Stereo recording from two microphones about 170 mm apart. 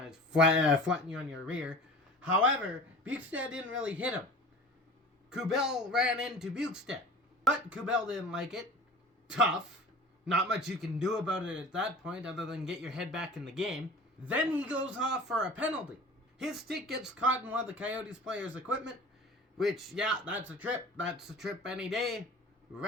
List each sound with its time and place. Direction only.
0.0 s a sound: 5° right (ahead or behind)
0.5 s a man's voice: 5° right (ahead or behind)
1.3 s speech: 90° right
3.0 s speech: 10° right (ahead or behind)
5.3 s a man's voice: 5° right (ahead or behind)